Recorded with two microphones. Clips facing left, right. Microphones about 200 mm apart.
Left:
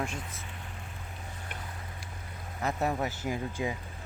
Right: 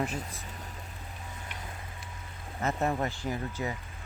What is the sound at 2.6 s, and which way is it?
Speech, centre (ahead or behind).